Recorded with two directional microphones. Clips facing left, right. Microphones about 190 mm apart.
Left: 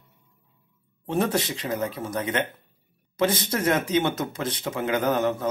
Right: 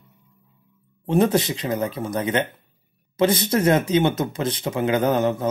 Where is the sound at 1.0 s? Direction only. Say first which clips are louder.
Right 6 dB; 20° right (ahead or behind).